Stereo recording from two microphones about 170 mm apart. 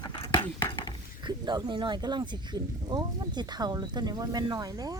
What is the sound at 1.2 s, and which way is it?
Speech, 25° right (ahead or behind).